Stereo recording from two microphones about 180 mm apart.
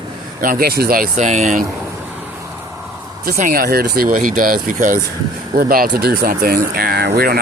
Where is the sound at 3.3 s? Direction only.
50° right (ahead or behind).